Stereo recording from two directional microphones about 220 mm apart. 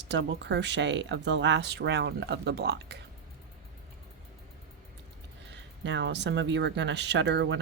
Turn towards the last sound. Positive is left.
turn(degrees=-55)  # may be behind; listen again after turning